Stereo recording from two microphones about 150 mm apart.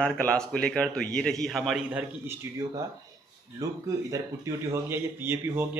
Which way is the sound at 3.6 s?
25° right (ahead or behind).